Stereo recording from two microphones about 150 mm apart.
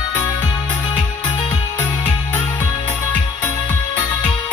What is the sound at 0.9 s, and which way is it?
Music, 30° left (ahead or behind).